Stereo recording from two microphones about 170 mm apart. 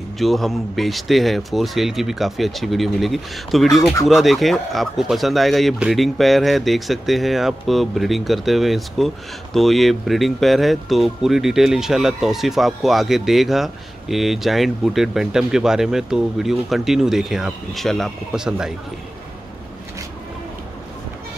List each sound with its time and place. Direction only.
0.2 s a man's voice: centre (ahead or behind)